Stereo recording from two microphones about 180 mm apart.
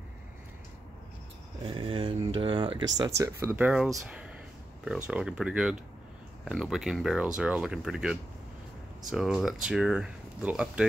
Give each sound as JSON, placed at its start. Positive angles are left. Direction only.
{"t": 1.6, "sound": "speech", "side_deg": -30}
{"t": 3.2, "sound": "speech", "side_deg": -15}